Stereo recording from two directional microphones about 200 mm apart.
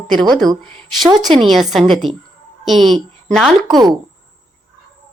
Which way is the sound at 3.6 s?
20° right (ahead or behind).